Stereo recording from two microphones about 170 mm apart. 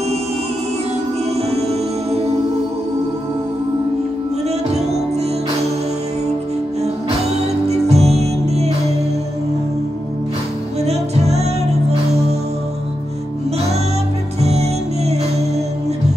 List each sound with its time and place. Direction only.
1.3 s music: 40° right (ahead or behind)
4.5 s music: 40° right (ahead or behind)
6.8 s music: 40° right (ahead or behind)
10.8 s music: 40° right (ahead or behind)
14.4 s music: 40° right (ahead or behind)